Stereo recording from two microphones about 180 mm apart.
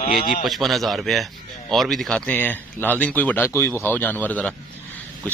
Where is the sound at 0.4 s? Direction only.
Centre (ahead or behind).